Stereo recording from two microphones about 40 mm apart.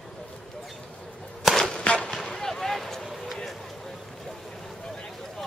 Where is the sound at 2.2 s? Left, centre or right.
Centre.